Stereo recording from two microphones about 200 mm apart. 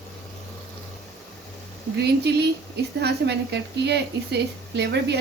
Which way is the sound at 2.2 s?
55° right (ahead or behind).